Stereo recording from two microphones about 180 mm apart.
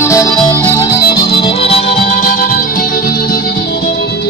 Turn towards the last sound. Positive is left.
turn(degrees=55)  # may be behind; listen again after turning